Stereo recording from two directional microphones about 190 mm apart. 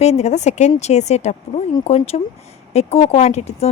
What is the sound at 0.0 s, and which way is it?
Speech, 35° left (ahead or behind).